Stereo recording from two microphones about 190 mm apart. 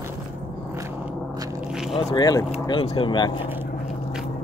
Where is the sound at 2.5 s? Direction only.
30° left (ahead or behind).